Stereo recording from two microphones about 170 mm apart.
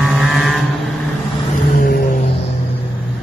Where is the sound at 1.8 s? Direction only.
55° left (ahead or behind).